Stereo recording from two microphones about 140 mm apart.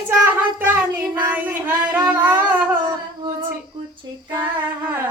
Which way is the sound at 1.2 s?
15° right (ahead or behind).